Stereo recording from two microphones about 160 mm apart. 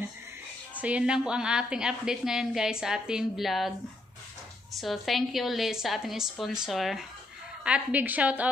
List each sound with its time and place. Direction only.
0.7 s a woman's voice: 10° right (ahead or behind)
4.7 s a woman's voice: centre (ahead or behind)